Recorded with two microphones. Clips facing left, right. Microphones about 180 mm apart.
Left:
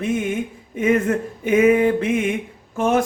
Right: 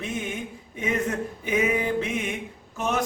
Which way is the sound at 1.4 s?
55° left (ahead or behind).